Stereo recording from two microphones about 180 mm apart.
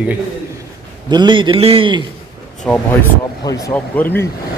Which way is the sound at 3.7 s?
10° left (ahead or behind).